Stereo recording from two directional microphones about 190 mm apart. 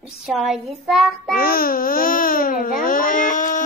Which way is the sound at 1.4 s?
50° left (ahead or behind).